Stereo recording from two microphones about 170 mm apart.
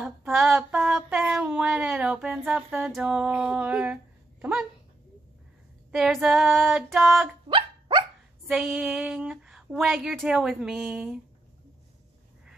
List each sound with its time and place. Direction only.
0.0 s a sound: 5° right (ahead or behind)
5.9 s speech: 5° right (ahead or behind)
7.4 s dog: 30° right (ahead or behind)
8.5 s speech: 5° right (ahead or behind)